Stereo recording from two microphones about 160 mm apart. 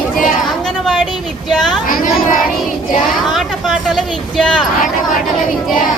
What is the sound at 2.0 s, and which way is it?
Child singing, 60° left (ahead or behind).